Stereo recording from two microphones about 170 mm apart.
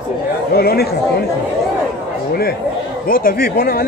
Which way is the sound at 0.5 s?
65° left (ahead or behind).